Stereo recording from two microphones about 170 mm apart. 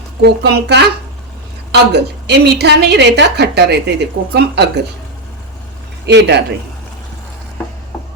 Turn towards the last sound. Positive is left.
turn(degrees=-85)